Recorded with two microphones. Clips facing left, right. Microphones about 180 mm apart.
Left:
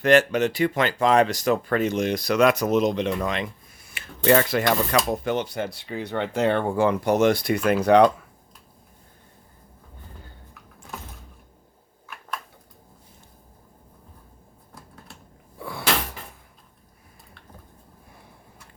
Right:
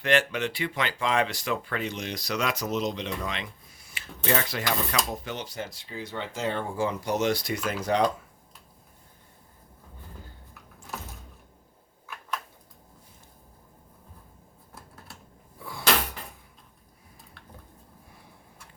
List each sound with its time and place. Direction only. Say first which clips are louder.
0.0 s speech: left 7 dB; 40° left (ahead or behind); by 8.1 s 65° left (ahead or behind)
15.5 s mechanisms: left 6 dB; 65° left (ahead or behind)